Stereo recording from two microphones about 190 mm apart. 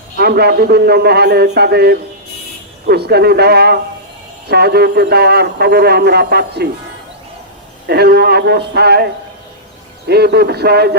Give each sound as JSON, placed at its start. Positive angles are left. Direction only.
{"t": 0.2, "sound": "a man's voice", "side_deg": -55}
{"t": 7.9, "sound": "a man's voice", "side_deg": -55}
{"t": 10.1, "sound": "a man's voice", "side_deg": -60}